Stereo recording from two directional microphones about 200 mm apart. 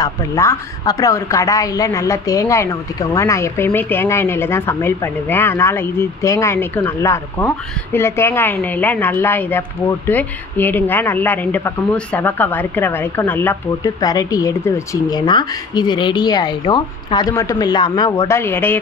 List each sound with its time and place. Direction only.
0.0 s a woman's voice: 15° left (ahead or behind)